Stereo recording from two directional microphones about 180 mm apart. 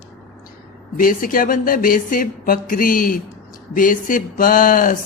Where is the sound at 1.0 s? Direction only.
50° left (ahead or behind).